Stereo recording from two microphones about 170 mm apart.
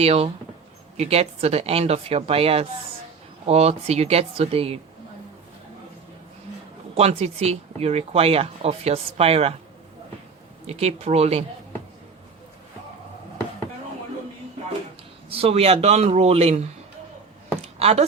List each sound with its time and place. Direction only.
0.0 s speech: 35° right (ahead or behind)
6.9 s speech: 40° right (ahead or behind)
10.7 s speech: 40° right (ahead or behind)
15.3 s speech: 35° right (ahead or behind)
17.6 s a sound: 40° right (ahead or behind)